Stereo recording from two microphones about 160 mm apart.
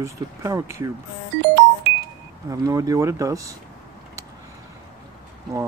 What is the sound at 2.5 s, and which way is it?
Speech, 20° right (ahead or behind).